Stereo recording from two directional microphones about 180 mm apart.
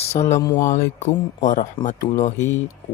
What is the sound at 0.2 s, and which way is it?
Speech, 20° left (ahead or behind).